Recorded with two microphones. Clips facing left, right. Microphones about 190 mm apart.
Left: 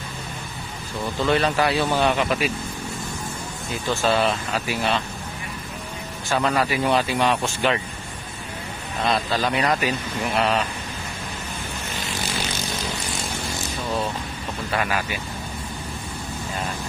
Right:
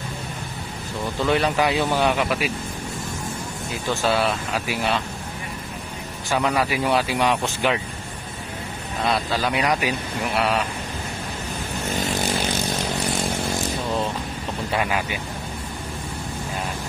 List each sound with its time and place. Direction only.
1.2 s speech: 10° right (ahead or behind)
4.0 s speech: 5° right (ahead or behind)
6.3 s speech: 10° right (ahead or behind)
9.0 s speech: 10° right (ahead or behind)
14.7 s speech: 20° right (ahead or behind)